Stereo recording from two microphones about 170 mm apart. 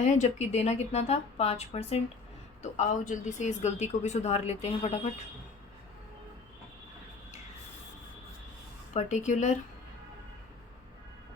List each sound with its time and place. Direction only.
0.0 s a woman's voice: 45° left (ahead or behind)
8.9 s a woman's voice: 45° left (ahead or behind)